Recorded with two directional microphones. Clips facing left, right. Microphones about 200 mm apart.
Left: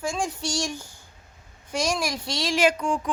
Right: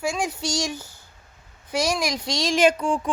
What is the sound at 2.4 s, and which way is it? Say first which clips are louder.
Speech: right 3 dB; 25° right (ahead or behind).